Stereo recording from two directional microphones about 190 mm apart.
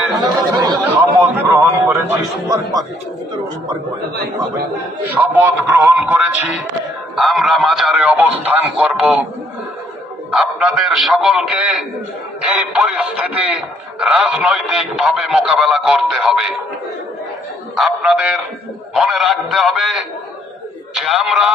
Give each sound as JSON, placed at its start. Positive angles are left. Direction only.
{"t": 0.2, "sound": "speech", "side_deg": -20}
{"t": 1.2, "sound": "a sound", "side_deg": -10}
{"t": 5.1, "sound": "a man's voice", "side_deg": -15}
{"t": 10.3, "sound": "speech", "side_deg": 0}
{"t": 17.7, "sound": "speech", "side_deg": 0}